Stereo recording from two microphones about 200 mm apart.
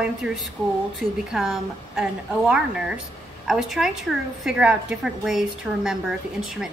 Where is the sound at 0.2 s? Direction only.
5° right (ahead or behind).